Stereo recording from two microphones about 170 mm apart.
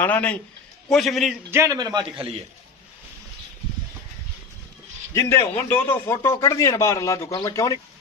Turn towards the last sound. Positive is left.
turn(degrees=20)  # may be behind; listen again after turning